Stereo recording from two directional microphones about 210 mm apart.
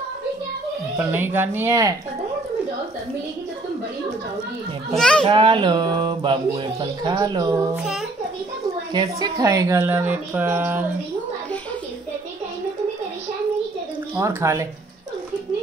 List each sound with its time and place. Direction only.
0.9 s speech: 10° right (ahead or behind)
4.9 s a child's voice: 5° left (ahead or behind)
5.2 s speech: 25° right (ahead or behind)
7.7 s a child's voice: 5° right (ahead or behind)
8.9 s speech: 20° right (ahead or behind)
14.1 s speech: 15° right (ahead or behind)